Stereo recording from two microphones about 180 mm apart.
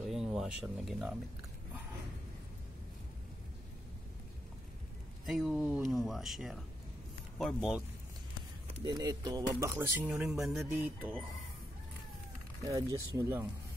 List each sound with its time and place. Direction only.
0.1 s speech: 5° right (ahead or behind)
5.2 s speech: centre (ahead or behind)
8.8 s speech: 20° right (ahead or behind)
10.0 s speech: 5° right (ahead or behind)
12.6 s speech: 15° right (ahead or behind)